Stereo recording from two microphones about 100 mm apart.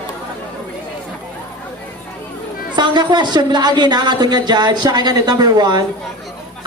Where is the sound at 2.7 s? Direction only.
50° right (ahead or behind).